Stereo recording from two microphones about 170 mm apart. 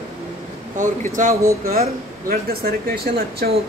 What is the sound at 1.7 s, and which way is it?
Speech, 60° right (ahead or behind).